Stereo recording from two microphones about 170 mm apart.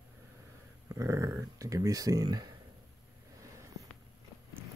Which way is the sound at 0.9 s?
15° right (ahead or behind).